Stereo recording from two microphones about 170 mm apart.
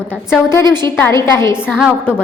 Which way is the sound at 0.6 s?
25° right (ahead or behind).